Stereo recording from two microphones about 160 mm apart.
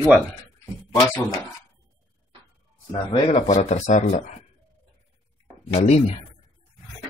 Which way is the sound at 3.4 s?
50° left (ahead or behind).